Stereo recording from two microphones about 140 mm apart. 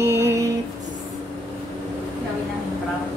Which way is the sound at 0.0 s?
20° right (ahead or behind).